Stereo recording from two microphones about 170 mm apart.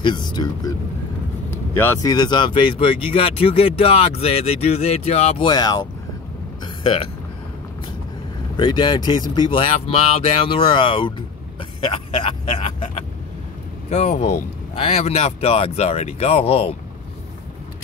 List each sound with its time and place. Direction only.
0.0 s speech: 25° left (ahead or behind)
1.5 s speech: 15° left (ahead or behind); by 5.4 s 40° left (ahead or behind)
5.4 s speech: 25° left (ahead or behind)
8.5 s speech: 30° left (ahead or behind)